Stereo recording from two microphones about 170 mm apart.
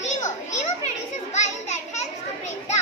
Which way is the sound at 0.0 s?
45° left (ahead or behind).